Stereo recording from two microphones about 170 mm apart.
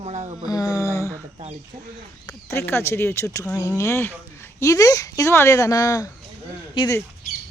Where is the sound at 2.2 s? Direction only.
15° left (ahead or behind).